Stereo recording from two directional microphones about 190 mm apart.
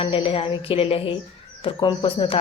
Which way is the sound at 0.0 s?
30° left (ahead or behind).